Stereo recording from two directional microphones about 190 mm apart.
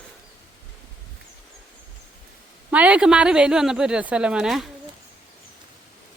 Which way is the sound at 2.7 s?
5° right (ahead or behind).